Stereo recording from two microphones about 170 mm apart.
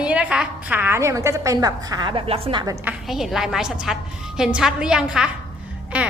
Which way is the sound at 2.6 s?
20° right (ahead or behind).